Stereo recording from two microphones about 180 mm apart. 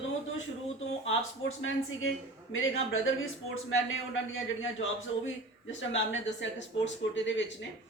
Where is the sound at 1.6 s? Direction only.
90° left.